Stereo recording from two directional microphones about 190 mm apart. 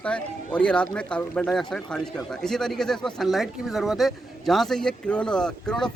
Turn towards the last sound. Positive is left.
turn(degrees=5)  # may be behind; listen again after turning